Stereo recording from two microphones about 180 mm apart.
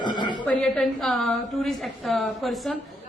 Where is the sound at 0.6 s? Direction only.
Centre (ahead or behind).